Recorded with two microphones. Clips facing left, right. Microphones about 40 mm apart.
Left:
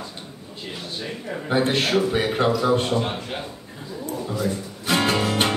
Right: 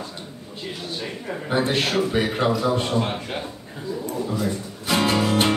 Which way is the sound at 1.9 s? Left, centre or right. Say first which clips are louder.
Left 1 dB; centre.